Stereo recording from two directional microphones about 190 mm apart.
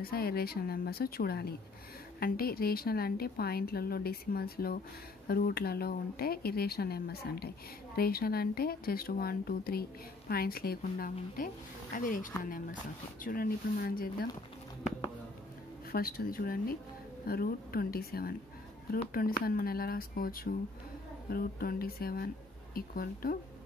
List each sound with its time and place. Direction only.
0.0 s speech: 55° left (ahead or behind)
15.9 s speech: 50° left (ahead or behind)